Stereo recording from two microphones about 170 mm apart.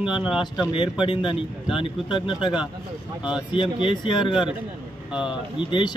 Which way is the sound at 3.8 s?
25° left (ahead or behind).